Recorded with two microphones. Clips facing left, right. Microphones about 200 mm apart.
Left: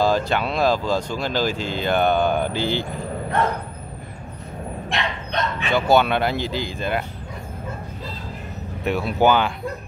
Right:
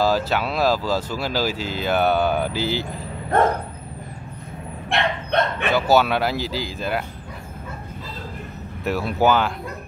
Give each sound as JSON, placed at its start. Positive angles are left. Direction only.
{"t": 0.0, "sound": "speech", "side_deg": -5}
{"t": 4.8, "sound": "bow-wow", "side_deg": -60}
{"t": 5.7, "sound": "speech", "side_deg": -5}
{"t": 8.8, "sound": "speech", "side_deg": 0}